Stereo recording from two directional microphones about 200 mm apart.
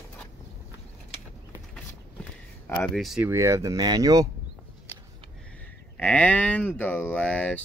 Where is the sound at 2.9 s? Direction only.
Centre (ahead or behind); by 4.2 s 15° right (ahead or behind).